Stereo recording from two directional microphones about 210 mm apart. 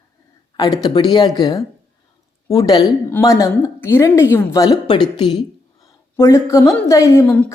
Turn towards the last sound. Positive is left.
turn(degrees=10)  # may be behind; listen again after turning